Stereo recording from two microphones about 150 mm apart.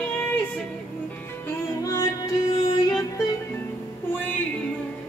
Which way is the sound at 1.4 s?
20° left (ahead or behind).